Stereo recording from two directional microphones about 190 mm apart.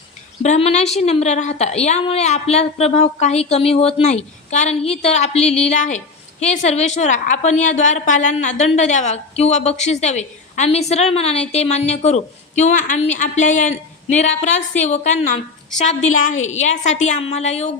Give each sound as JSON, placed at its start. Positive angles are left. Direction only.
{"t": 0.4, "sound": "a woman's voice", "side_deg": 35}